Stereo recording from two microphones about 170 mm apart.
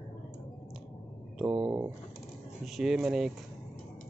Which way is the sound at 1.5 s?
25° right (ahead or behind).